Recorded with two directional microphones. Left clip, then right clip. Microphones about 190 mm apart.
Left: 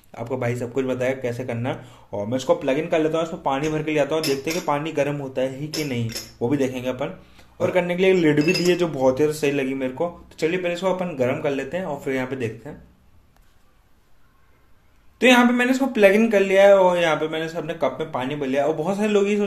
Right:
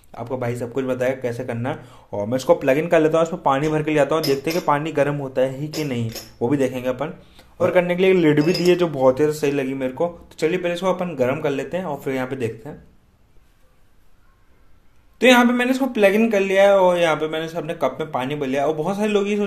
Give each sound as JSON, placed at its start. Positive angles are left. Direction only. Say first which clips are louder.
{"t": 0.1, "sound": "a man's voice", "louder": "even", "side_deg": 0}
{"t": 15.1, "sound": "a man's voice", "louder": "right 1 dB", "side_deg": -10}